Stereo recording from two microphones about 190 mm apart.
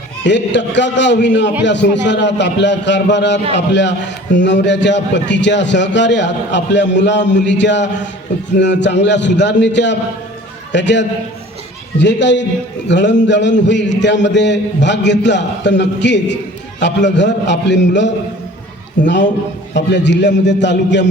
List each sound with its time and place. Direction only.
0.3 s a man's voice: 70° left (ahead or behind)